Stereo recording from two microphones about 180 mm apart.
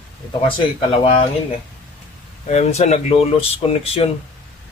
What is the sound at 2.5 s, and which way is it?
Speech, 35° left (ahead or behind).